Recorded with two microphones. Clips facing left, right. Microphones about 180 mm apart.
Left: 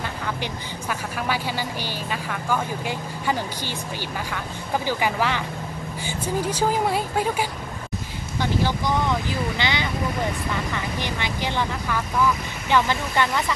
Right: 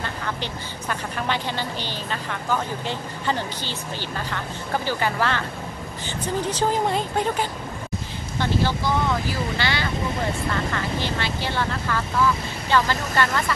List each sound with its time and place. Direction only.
0.0 s speech: 10° left (ahead or behind)